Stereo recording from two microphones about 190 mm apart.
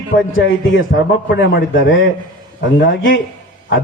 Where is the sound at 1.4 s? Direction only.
50° left (ahead or behind).